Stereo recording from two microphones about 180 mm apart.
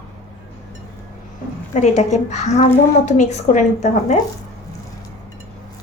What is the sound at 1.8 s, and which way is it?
A woman's voice, 40° left (ahead or behind).